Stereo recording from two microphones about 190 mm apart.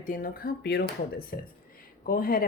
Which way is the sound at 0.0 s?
45° left (ahead or behind).